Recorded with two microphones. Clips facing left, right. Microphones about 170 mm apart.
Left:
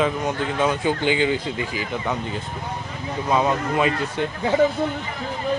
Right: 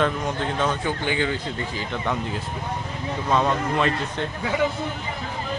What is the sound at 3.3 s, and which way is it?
Speech, 10° left (ahead or behind).